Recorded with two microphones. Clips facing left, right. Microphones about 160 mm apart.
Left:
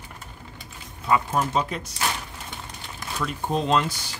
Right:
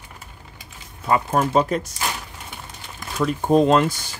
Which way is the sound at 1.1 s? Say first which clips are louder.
Right 3 dB; 45° right (ahead or behind).